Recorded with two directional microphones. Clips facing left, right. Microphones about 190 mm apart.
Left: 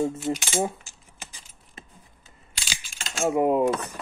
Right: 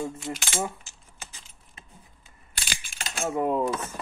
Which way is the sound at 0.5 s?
15° left (ahead or behind).